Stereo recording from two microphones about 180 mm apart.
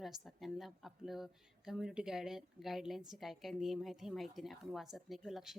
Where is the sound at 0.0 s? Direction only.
Centre (ahead or behind).